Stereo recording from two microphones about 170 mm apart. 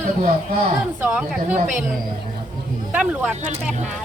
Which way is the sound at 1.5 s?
50° right (ahead or behind).